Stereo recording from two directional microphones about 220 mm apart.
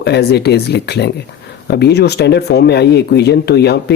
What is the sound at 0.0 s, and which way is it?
Speech, 50° left (ahead or behind).